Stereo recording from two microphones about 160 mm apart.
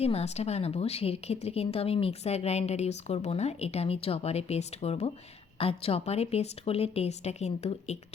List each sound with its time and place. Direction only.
0.0 s a woman's voice: 40° left (ahead or behind)